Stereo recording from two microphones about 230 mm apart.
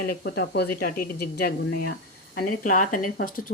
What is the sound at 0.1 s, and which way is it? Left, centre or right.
Speech, left.